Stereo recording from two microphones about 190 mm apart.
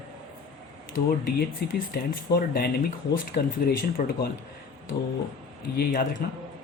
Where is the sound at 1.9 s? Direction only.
50° left (ahead or behind).